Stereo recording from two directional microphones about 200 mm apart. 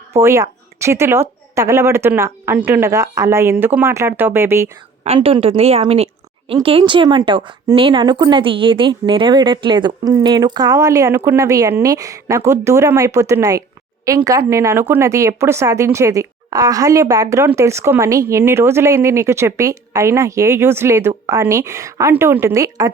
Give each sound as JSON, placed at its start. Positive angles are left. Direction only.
{"t": 0.1, "sound": "speech", "side_deg": -15}
{"t": 5.0, "sound": "a woman's voice", "side_deg": -30}